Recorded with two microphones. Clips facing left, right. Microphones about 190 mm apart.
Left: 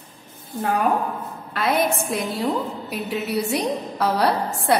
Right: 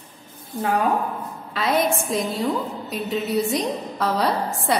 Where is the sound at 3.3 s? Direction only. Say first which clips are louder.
Even; 70° left (ahead or behind).